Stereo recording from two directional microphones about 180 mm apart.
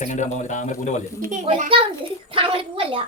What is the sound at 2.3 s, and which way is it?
Speech, 30° right (ahead or behind).